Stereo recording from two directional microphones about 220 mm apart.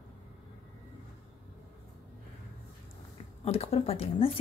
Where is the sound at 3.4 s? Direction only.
25° left (ahead or behind).